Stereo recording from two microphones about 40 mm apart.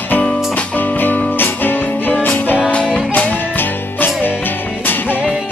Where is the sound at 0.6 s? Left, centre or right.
Left.